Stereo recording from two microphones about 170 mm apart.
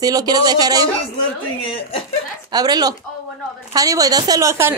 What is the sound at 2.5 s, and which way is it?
A woman's voice, 25° right (ahead or behind).